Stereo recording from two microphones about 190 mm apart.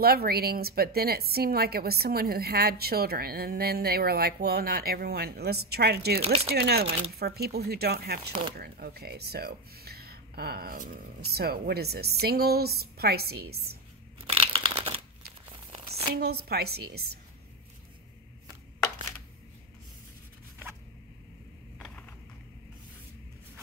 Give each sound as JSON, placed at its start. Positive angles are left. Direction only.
{"t": 0.0, "sound": "a woman's voice", "side_deg": -55}
{"t": 14.2, "sound": "a sound", "side_deg": -30}
{"t": 15.5, "sound": "crumpling", "side_deg": -25}
{"t": 16.2, "sound": "a woman's voice", "side_deg": -55}